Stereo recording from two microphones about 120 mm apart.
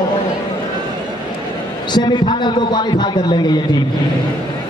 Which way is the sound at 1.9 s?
40° left (ahead or behind).